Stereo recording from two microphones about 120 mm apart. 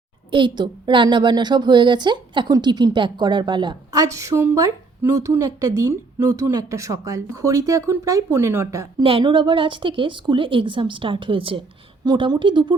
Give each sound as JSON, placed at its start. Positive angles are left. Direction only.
{"t": 0.3, "sound": "a woman's voice", "side_deg": -40}
{"t": 4.0, "sound": "speech", "side_deg": -25}
{"t": 9.0, "sound": "a woman's voice", "side_deg": -45}